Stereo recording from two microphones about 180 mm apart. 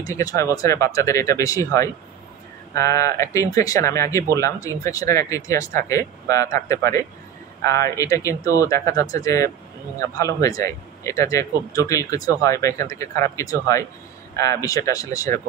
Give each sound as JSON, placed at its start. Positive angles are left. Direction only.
{"t": 0.0, "sound": "speech", "side_deg": 20}